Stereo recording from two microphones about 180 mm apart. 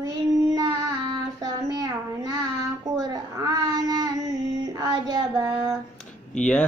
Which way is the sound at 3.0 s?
20° right (ahead or behind).